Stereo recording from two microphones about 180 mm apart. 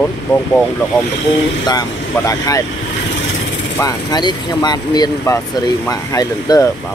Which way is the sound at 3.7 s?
20° left (ahead or behind).